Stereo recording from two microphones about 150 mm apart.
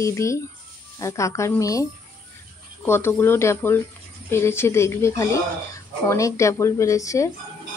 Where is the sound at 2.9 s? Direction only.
15° left (ahead or behind).